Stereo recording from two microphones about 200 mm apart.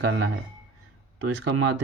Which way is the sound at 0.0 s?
60° right (ahead or behind).